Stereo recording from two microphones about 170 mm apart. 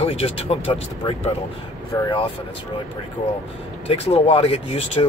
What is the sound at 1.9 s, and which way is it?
Speech, 20° left (ahead or behind).